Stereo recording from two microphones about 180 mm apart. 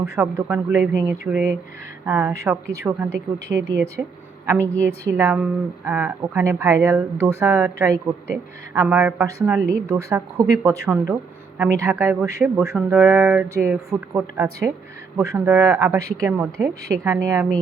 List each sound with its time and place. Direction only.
0.2 s a woman's voice: 10° right (ahead or behind)
4.6 s a woman's voice: 10° left (ahead or behind)
5.0 s a woman's voice: 10° right (ahead or behind)